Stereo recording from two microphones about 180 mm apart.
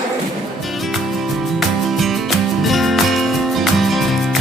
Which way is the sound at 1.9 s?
Centre (ahead or behind).